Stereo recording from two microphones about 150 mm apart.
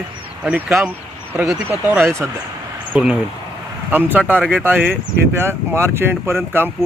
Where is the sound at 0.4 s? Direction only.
10° right (ahead or behind).